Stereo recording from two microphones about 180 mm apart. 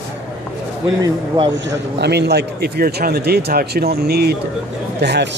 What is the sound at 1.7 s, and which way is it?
A man's voice, 65° right (ahead or behind).